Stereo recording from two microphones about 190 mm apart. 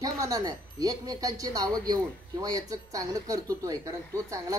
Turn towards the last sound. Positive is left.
turn(degrees=-15)  # may be behind; listen again after turning